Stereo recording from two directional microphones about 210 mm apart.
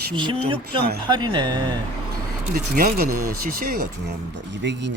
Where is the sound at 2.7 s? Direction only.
45° right (ahead or behind).